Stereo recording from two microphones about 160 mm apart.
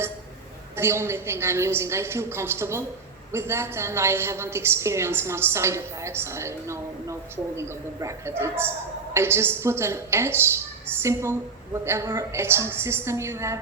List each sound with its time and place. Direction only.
0.8 s a woman's voice: 15° right (ahead or behind)